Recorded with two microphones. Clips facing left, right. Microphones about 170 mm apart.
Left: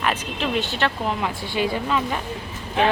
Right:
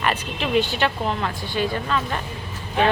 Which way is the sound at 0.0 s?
Centre (ahead or behind).